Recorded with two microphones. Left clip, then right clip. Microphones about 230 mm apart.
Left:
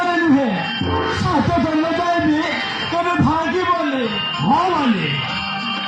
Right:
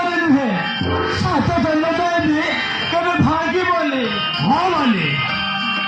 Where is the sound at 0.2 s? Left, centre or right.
Right.